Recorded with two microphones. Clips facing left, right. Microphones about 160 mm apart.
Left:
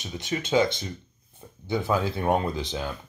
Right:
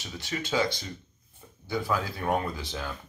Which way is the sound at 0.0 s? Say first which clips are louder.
Left 4 dB; 20° left (ahead or behind).